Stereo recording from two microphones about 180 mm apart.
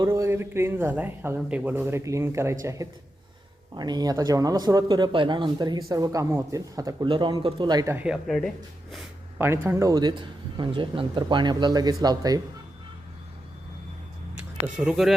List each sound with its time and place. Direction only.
0.0 s speech: 20° right (ahead or behind)
7.9 s speech: 5° right (ahead or behind)
9.4 s speech: 15° right (ahead or behind)
14.3 s speech: 10° right (ahead or behind)